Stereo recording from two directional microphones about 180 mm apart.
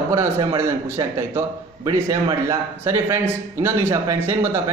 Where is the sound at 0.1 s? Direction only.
20° right (ahead or behind).